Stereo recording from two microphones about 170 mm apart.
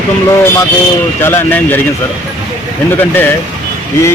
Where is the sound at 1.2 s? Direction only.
15° left (ahead or behind).